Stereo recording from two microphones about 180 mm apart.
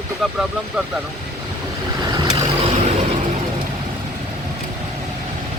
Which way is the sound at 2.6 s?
35° right (ahead or behind).